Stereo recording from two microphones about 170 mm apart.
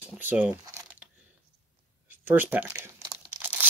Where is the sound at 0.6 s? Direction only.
20° right (ahead or behind).